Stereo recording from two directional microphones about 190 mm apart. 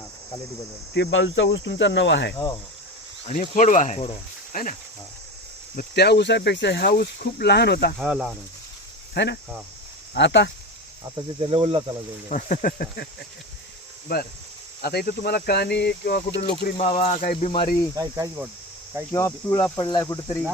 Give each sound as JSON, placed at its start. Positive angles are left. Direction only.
{"t": 0.9, "sound": "cricket", "side_deg": 75}
{"t": 2.3, "sound": "cricket", "side_deg": 20}
{"t": 3.5, "sound": "speech", "side_deg": 40}
{"t": 4.5, "sound": "speech", "side_deg": 50}
{"t": 5.7, "sound": "speech", "side_deg": 60}
{"t": 7.9, "sound": "speech", "side_deg": -5}
{"t": 9.1, "sound": "speech", "side_deg": 65}
{"t": 10.2, "sound": "cricket", "side_deg": 70}
{"t": 11.1, "sound": "speech", "side_deg": -30}
{"t": 12.3, "sound": "speech", "side_deg": 45}
{"t": 14.8, "sound": "speech", "side_deg": 55}
{"t": 16.7, "sound": "speech", "side_deg": 30}
{"t": 17.9, "sound": "speech", "side_deg": -15}
{"t": 19.1, "sound": "speech", "side_deg": 15}